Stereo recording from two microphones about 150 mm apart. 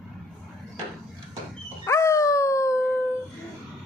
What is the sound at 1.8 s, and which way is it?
Dog, 20° left (ahead or behind).